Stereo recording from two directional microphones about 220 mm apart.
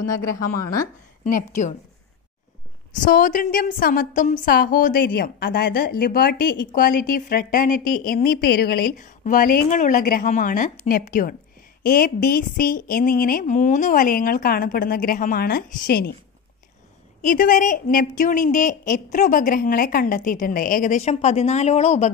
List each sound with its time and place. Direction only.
0.0 s speech: 15° left (ahead or behind)
1.2 s a woman's voice: 35° left (ahead or behind)
3.1 s a woman's voice: 40° left (ahead or behind)
17.2 s a woman's voice: 35° left (ahead or behind)